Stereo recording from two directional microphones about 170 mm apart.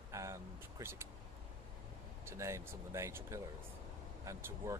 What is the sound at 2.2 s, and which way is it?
Speech, 15° right (ahead or behind).